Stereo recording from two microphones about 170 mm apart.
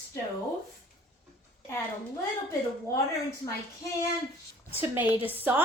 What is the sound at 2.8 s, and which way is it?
Speech, 20° left (ahead or behind).